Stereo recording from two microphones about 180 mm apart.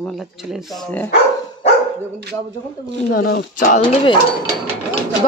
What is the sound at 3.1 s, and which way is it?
Speech, 60° left (ahead or behind).